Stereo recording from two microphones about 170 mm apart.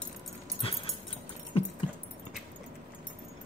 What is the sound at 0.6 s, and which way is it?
Dog, 35° left (ahead or behind).